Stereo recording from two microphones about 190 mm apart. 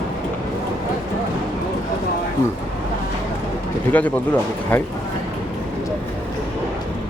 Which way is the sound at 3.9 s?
10° left (ahead or behind).